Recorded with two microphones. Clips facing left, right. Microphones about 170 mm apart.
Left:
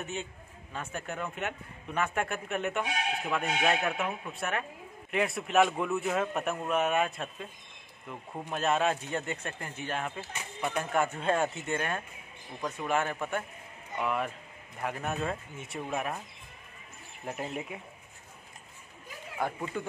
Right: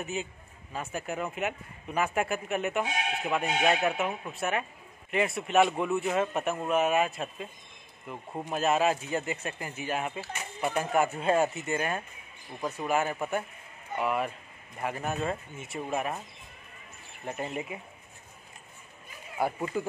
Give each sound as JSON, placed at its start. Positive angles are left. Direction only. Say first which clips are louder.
{"t": 0.0, "sound": "speech", "louder": "right 3 dB", "side_deg": -5}
{"t": 8.3, "sound": "speech", "louder": "right 3 dB", "side_deg": -15}
{"t": 8.5, "sound": "speech", "louder": "right 2 dB", "side_deg": -5}
{"t": 17.2, "sound": "speech", "louder": "right 2 dB", "side_deg": 0}
{"t": 19.4, "sound": "speech", "louder": "right 3 dB", "side_deg": -10}